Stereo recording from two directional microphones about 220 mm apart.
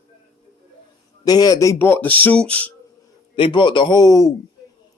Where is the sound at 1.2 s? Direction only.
15° left (ahead or behind).